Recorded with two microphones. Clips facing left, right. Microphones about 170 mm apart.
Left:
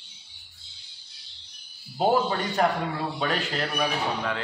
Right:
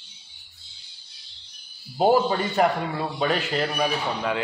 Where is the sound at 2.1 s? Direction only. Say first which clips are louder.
Right 3 dB; 5° right (ahead or behind).